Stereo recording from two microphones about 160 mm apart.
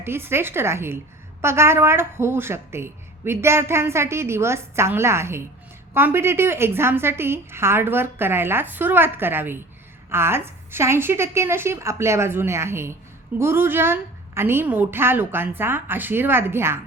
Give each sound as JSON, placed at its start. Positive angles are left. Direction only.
{"t": 0.0, "sound": "a woman's voice", "side_deg": -15}